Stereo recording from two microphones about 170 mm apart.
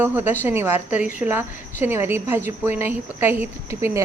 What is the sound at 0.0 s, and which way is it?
A woman's voice, 10° right (ahead or behind).